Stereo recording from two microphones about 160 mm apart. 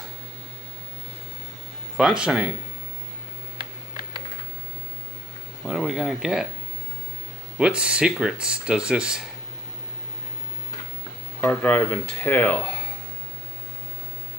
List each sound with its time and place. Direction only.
2.0 s speech: 5° right (ahead or behind)
5.7 s speech: 5° right (ahead or behind)
7.5 s speech: 5° right (ahead or behind)
11.4 s speech: 10° left (ahead or behind)